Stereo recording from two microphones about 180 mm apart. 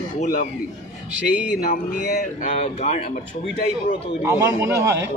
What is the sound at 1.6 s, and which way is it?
Speech, 45° left (ahead or behind).